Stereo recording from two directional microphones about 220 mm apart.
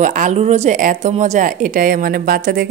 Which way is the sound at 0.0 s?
35° right (ahead or behind).